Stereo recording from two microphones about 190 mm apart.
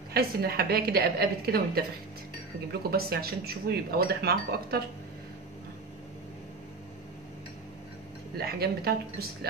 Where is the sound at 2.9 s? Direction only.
55° right (ahead or behind).